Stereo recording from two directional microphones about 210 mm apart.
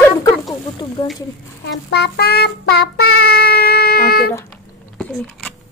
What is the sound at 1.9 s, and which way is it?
Child singing, 50° left (ahead or behind).